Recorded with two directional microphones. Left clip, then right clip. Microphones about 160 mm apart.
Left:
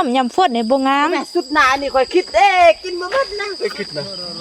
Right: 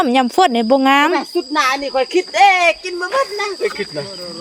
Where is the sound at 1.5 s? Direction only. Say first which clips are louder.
Left 2 dB; 60° right (ahead or behind); by 4.0 s 90° right.